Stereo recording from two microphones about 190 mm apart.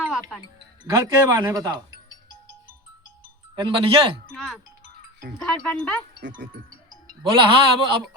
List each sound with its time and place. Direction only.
0.0 s music: centre (ahead or behind)
0.9 s speech: 15° right (ahead or behind)
3.5 s a man's voice: 25° right (ahead or behind)
4.3 s speech: centre (ahead or behind)
6.1 s speech: 65° right (ahead or behind)
7.3 s a man's voice: 25° right (ahead or behind)